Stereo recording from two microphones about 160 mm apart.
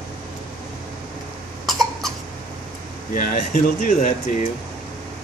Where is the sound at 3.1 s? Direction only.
55° left (ahead or behind).